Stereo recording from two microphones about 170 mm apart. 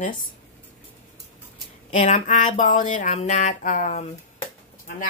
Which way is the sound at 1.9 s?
45° left (ahead or behind).